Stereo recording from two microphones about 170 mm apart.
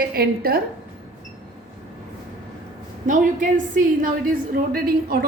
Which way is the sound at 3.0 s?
50° right (ahead or behind).